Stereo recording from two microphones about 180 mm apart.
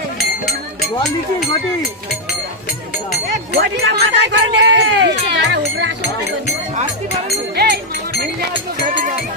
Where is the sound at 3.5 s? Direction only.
70° right (ahead or behind).